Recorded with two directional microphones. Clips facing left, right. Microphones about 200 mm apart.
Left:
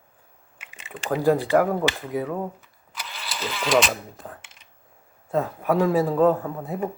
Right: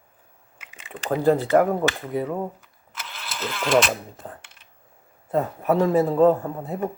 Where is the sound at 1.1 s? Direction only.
10° left (ahead or behind).